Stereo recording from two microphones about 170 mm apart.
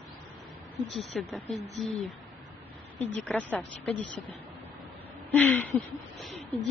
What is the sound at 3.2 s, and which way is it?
Speech, 10° left (ahead or behind).